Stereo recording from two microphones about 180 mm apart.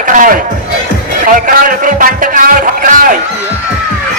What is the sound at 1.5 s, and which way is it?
A man's voice, 50° right (ahead or behind).